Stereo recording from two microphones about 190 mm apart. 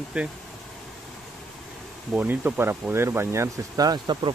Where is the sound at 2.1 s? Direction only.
10° right (ahead or behind).